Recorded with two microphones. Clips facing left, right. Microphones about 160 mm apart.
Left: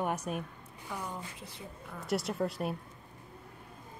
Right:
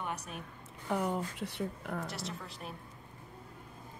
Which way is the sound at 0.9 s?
65° right (ahead or behind).